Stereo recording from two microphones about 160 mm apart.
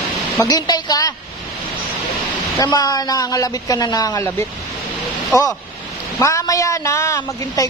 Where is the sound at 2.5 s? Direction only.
25° left (ahead or behind).